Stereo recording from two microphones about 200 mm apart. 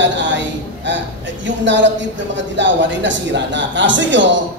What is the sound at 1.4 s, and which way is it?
Speech, 65° right (ahead or behind).